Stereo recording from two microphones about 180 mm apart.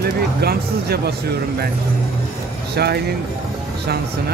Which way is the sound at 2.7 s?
65° right (ahead or behind).